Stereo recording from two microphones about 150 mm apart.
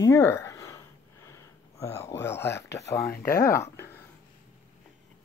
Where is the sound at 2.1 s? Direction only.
15° left (ahead or behind).